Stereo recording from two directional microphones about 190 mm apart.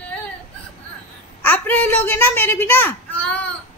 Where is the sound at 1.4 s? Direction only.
10° left (ahead or behind).